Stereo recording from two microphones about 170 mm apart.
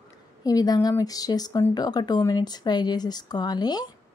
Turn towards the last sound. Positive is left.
turn(degrees=25)  # may be behind; listen again after turning